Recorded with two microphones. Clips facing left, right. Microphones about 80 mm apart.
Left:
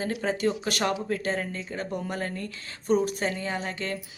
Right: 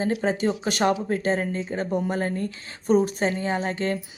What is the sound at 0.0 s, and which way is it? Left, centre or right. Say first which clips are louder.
A woman's voice: right 3 dB; right.